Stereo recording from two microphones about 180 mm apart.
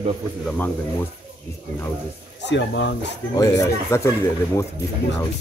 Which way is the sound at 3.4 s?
15° left (ahead or behind).